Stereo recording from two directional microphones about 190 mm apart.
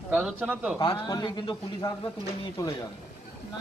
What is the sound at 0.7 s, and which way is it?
Speech, 25° left (ahead or behind).